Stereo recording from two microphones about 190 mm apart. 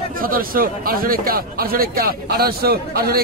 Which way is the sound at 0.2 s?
50° right (ahead or behind).